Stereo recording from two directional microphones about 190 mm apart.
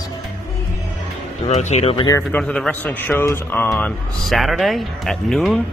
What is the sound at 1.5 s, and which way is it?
Speech, 35° left (ahead or behind).